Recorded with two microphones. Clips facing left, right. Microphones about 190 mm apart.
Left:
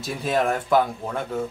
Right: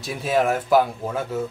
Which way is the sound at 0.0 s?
Centre (ahead or behind).